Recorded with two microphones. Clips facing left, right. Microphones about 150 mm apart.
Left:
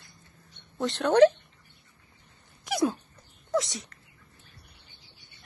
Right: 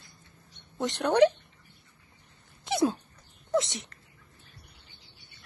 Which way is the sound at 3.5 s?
25° right (ahead or behind).